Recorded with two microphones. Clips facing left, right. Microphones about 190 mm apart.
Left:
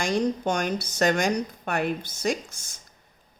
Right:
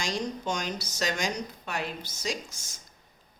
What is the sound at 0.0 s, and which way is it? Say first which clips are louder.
A woman's voice: left 7 dB; 55° left (ahead or behind).